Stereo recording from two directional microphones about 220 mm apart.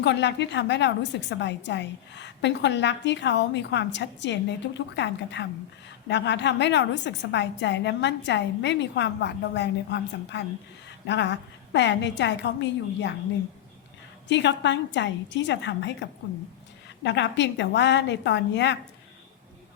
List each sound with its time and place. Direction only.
0.0 s a woman's voice: 50° left (ahead or behind)
14.3 s a woman's voice: 55° left (ahead or behind)